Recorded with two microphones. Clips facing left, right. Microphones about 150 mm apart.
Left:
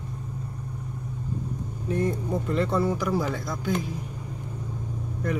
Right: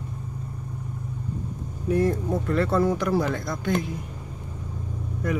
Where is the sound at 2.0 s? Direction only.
15° left (ahead or behind).